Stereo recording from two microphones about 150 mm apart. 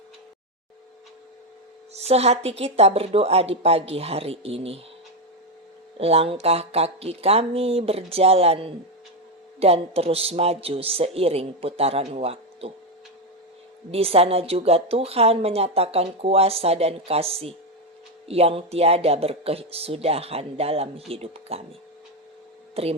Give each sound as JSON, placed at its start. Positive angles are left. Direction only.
{"t": 1.9, "sound": "speech", "side_deg": -45}
{"t": 6.0, "sound": "a woman's voice", "side_deg": -40}
{"t": 13.9, "sound": "a woman's voice", "side_deg": -40}
{"t": 22.7, "sound": "speech", "side_deg": -40}